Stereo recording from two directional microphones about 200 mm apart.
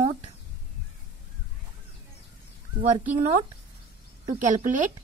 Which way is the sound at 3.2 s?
40° right (ahead or behind).